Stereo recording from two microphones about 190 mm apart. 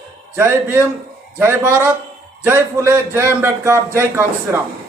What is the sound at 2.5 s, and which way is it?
A man's voice, 10° right (ahead or behind).